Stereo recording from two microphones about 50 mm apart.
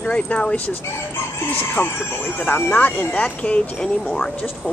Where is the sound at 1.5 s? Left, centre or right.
Left.